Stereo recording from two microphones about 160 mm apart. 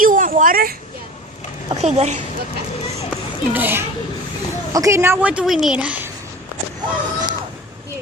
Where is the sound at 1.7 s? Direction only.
45° right (ahead or behind).